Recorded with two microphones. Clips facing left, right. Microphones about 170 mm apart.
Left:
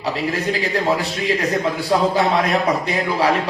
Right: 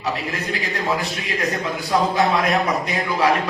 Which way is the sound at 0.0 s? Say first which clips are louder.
Left 4 dB; 30° left (ahead or behind).